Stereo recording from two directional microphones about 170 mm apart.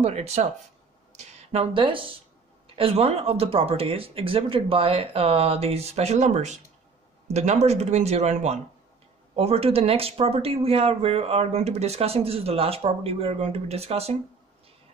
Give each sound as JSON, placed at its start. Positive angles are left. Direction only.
{"t": 0.0, "sound": "speech", "side_deg": -40}
{"t": 1.5, "sound": "speech", "side_deg": -35}